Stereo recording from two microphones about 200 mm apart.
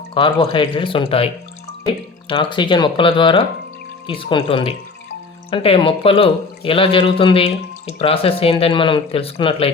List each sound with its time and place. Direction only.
0.1 s speech: 25° left (ahead or behind)
2.3 s speech: 25° left (ahead or behind)